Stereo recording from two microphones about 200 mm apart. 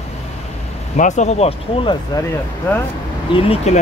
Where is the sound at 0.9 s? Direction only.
35° left (ahead or behind).